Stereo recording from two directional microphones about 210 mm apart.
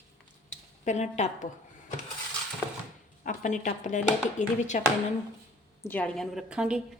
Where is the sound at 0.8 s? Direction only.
35° left (ahead or behind).